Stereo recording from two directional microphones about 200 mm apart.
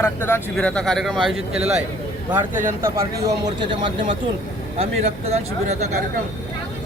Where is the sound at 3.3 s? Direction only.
20° right (ahead or behind).